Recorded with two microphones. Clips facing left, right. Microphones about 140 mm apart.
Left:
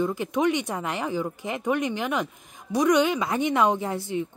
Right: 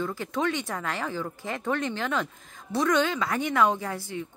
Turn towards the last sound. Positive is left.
turn(degrees=20)  # may be behind; listen again after turning